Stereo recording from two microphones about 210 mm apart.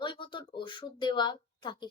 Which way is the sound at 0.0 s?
25° left (ahead or behind).